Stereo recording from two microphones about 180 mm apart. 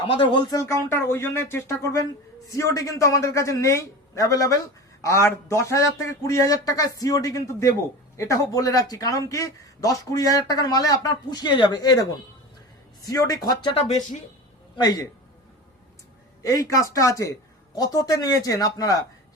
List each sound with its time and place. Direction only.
0.1 s speech: 25° left (ahead or behind)
16.4 s speech: 20° left (ahead or behind)